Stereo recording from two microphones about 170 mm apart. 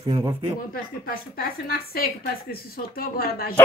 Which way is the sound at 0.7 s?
60° left (ahead or behind).